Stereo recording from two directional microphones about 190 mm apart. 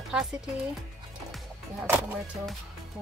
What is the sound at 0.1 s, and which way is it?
Speech, 5° right (ahead or behind).